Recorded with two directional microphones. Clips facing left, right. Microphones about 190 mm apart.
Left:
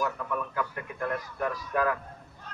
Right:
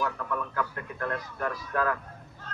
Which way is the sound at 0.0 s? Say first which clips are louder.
Even; 10° left (ahead or behind).